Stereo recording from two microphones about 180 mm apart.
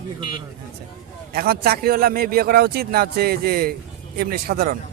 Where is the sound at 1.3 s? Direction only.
60° right (ahead or behind).